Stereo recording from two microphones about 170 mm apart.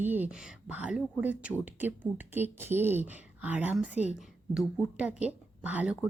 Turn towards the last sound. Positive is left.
turn(degrees=-10)  # may be behind; listen again after turning